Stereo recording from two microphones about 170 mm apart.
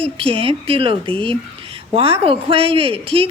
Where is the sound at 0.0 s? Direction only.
35° right (ahead or behind).